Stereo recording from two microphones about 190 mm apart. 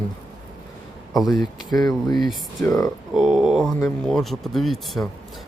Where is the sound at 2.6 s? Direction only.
20° left (ahead or behind).